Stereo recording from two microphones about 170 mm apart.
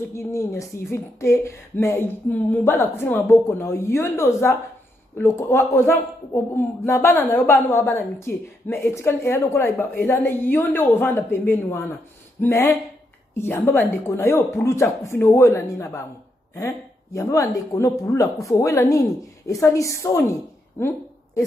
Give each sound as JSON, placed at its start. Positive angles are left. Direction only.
{"t": 0.1, "sound": "a man's voice", "side_deg": 15}